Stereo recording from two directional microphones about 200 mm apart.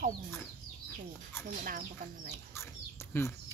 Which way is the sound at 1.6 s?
45° right (ahead or behind).